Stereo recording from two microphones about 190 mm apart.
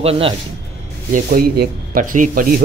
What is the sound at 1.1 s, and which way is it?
Speech, 50° right (ahead or behind).